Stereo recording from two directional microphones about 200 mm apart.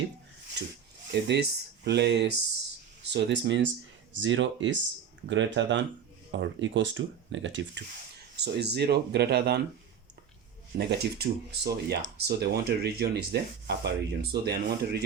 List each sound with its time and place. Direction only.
0.6 s speech: 60° right (ahead or behind)
10.8 s speech: 55° right (ahead or behind)